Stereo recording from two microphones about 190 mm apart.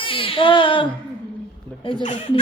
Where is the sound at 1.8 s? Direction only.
25° left (ahead or behind).